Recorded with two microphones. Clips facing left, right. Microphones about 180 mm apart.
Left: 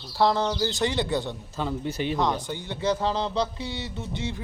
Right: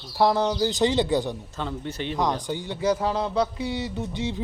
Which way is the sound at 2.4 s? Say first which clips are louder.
Right 2 dB; 15° right (ahead or behind).